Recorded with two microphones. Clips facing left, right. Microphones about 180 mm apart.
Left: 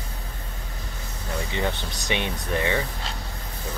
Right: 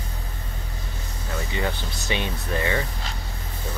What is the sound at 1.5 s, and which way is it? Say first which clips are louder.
Speech: even; 20° left (ahead or behind).